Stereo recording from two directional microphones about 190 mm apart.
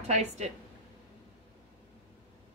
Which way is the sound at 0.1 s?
35° right (ahead or behind).